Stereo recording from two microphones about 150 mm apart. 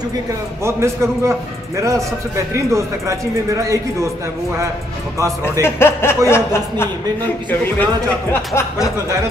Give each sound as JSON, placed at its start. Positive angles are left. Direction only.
{"t": 0.7, "sound": "a man's voice", "side_deg": -20}
{"t": 5.4, "sound": "speech", "side_deg": 15}
{"t": 8.3, "sound": "speech", "side_deg": 15}